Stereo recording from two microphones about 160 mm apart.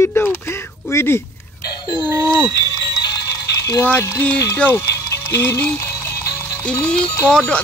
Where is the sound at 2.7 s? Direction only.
20° left (ahead or behind).